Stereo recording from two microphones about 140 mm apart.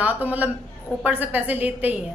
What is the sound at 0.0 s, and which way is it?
A woman's voice, 10° right (ahead or behind).